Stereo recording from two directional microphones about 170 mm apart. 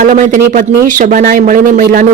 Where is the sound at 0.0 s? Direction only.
50° right (ahead or behind).